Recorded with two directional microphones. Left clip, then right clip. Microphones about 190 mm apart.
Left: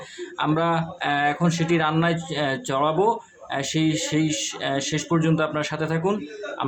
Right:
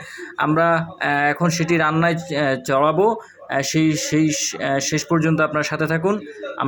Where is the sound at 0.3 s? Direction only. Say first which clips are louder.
Right 5 dB; 20° right (ahead or behind).